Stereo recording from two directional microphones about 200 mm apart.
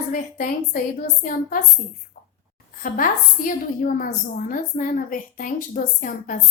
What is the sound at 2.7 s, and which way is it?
A woman's voice, 45° left (ahead or behind).